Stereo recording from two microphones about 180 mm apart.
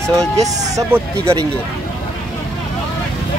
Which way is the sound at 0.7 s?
15° right (ahead or behind).